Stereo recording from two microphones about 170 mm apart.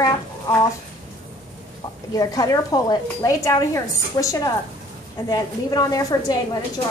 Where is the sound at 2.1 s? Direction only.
20° left (ahead or behind).